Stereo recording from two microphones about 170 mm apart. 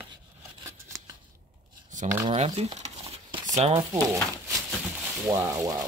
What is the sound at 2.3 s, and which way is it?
Speech, 35° right (ahead or behind).